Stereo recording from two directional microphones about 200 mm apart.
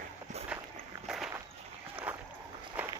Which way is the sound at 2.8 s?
10° right (ahead or behind).